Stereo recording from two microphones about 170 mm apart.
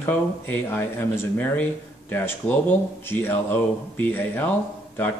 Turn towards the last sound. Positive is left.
turn(degrees=10)  # may be behind; listen again after turning